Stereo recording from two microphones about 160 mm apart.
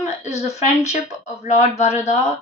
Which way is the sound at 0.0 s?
45° left (ahead or behind).